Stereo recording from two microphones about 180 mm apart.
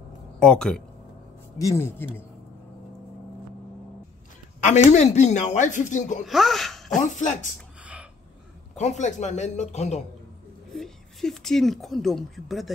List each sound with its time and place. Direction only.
0.4 s speech: 5° left (ahead or behind)
1.6 s speech: 15° left (ahead or behind)
4.9 s speech: 40° left (ahead or behind)
6.2 s speech: centre (ahead or behind)
7.0 s speech: 45° left (ahead or behind)
7.8 s a sound: 10° right (ahead or behind)
8.7 s speech: 40° left (ahead or behind)
10.7 s speech: centre (ahead or behind)